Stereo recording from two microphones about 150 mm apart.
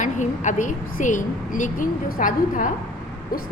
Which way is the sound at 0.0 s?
55° left (ahead or behind).